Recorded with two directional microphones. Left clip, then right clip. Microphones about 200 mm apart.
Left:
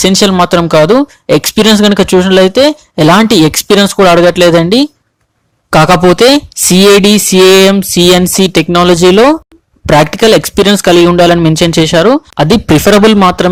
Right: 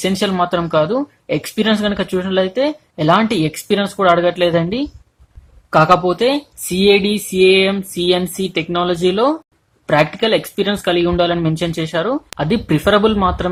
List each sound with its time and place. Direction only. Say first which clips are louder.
0.0 s speech: left 10 dB; 45° left (ahead or behind)